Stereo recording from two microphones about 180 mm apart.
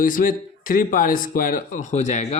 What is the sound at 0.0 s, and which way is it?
Speech, 50° left (ahead or behind).